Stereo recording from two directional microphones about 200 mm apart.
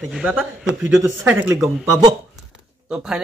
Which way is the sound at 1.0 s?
10° right (ahead or behind).